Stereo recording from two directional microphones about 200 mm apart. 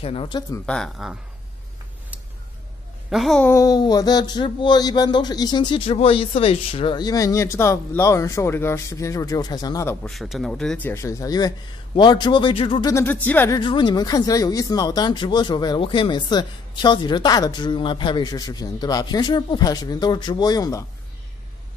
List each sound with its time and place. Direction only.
0.0 s speech: 30° left (ahead or behind)
0.7 s speech: centre (ahead or behind)
3.1 s speech: centre (ahead or behind)
3.4 s speech: 15° left (ahead or behind)
10.0 s speech: centre (ahead or behind); by 12.9 s 25° left (ahead or behind)
12.9 s speech: 10° left (ahead or behind)
13.6 s speech: 20° left (ahead or behind)